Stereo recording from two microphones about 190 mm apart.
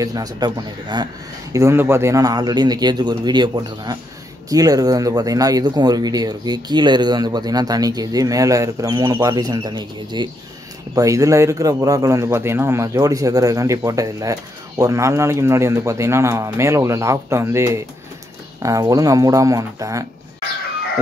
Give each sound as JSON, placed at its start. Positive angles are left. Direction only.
{"t": 0.0, "sound": "a man's voice", "side_deg": -20}